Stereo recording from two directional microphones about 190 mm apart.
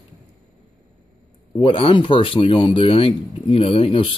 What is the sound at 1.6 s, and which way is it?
Speech, 30° left (ahead or behind).